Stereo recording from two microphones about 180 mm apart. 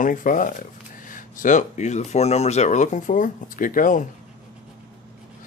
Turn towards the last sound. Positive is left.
turn(degrees=45)  # may be behind; listen again after turning